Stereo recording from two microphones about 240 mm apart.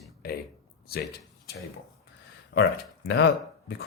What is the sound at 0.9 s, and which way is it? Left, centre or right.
Speech, left.